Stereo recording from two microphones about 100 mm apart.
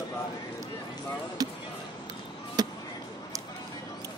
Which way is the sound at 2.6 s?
40° right (ahead or behind).